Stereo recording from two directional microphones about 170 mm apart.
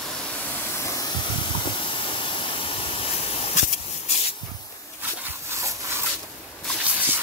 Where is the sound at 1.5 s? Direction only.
30° left (ahead or behind).